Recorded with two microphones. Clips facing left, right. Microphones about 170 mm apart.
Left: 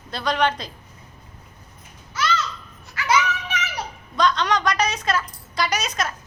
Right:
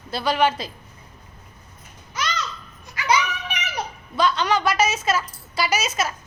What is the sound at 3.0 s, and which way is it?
Children playing, 15° right (ahead or behind).